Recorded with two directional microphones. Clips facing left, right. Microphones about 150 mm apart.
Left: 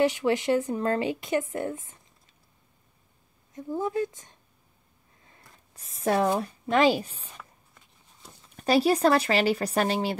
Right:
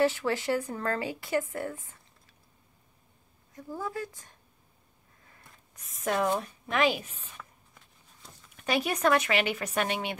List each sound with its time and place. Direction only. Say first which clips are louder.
0.0 s a woman's voice: left 3 dB; 15° left (ahead or behind)
3.5 s a woman's voice: left 7 dB; 20° left (ahead or behind)
5.3 s rub: left 1 dB; 30° left (ahead or behind)
6.4 s speech: left 5 dB; 35° left (ahead or behind)
8.4 s speech: left 7 dB; 35° left (ahead or behind)